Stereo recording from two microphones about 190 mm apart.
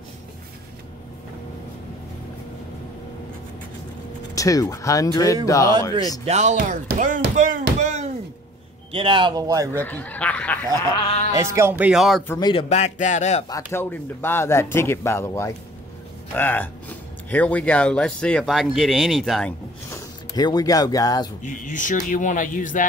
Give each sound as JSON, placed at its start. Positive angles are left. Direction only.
{"t": 4.4, "sound": "speech", "side_deg": 20}
{"t": 6.2, "sound": "speech", "side_deg": -35}
{"t": 8.9, "sound": "speech", "side_deg": -25}
{"t": 9.8, "sound": "speech", "side_deg": 10}
{"t": 11.3, "sound": "speech", "side_deg": -15}
{"t": 12.3, "sound": "speech", "side_deg": 20}
{"t": 12.6, "sound": "speech", "side_deg": 35}
{"t": 13.5, "sound": "speech", "side_deg": 15}
{"t": 20.3, "sound": "speech", "side_deg": 20}
{"t": 21.4, "sound": "speech", "side_deg": 45}